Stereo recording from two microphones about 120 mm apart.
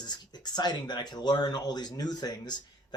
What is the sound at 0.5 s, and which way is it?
Speech, 35° left (ahead or behind).